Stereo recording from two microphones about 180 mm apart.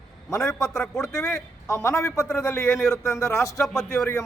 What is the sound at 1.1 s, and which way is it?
A man's voice, 15° left (ahead or behind).